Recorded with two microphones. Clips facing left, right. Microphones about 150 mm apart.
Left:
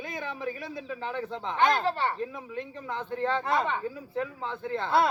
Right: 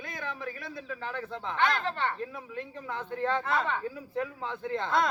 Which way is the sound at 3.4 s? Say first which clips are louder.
Left 3 dB; 15° left (ahead or behind).